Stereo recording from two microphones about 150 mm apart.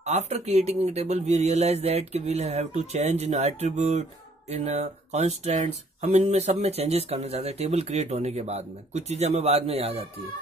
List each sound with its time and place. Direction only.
0.0 s speech: 50° right (ahead or behind)